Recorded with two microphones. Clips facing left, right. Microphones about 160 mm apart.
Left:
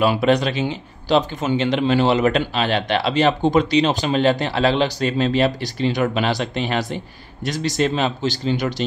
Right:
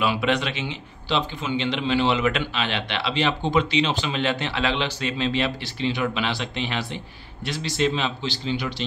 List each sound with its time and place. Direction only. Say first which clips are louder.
0.0 s a man's voice: left 6 dB; 40° left (ahead or behind)